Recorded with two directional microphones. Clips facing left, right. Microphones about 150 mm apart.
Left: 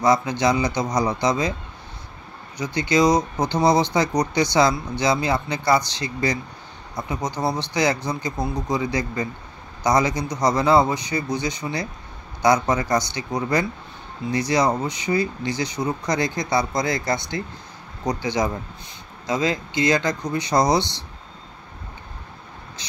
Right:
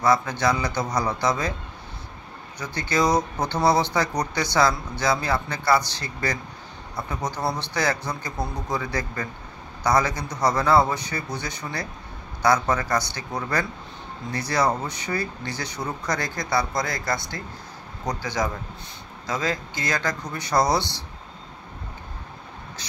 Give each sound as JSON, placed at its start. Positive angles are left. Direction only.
{"t": 0.0, "sound": "speech", "side_deg": 15}
{"t": 2.6, "sound": "speech", "side_deg": 15}
{"t": 22.8, "sound": "speech", "side_deg": 20}